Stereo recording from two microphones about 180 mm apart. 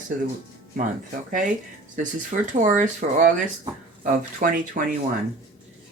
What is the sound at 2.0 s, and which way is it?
Speech, 45° right (ahead or behind).